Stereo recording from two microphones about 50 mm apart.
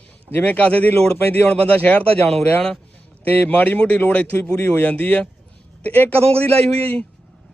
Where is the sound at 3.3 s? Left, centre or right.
Left.